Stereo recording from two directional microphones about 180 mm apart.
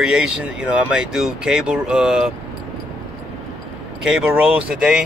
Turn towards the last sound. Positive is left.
turn(degrees=-5)  # may be behind; listen again after turning